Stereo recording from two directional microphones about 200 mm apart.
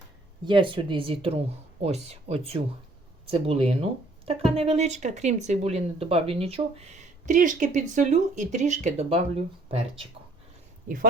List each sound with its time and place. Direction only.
0.4 s speech: 25° right (ahead or behind)